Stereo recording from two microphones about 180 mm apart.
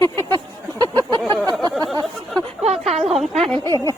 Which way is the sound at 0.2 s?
25° right (ahead or behind).